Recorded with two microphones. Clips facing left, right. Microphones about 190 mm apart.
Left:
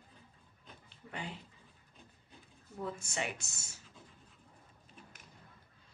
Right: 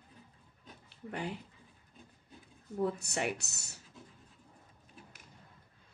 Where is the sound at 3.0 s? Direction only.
65° right (ahead or behind).